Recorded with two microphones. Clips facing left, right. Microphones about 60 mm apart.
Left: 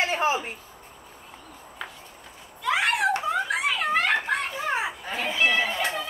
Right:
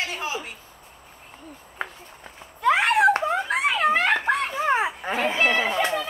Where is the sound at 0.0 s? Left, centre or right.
Left.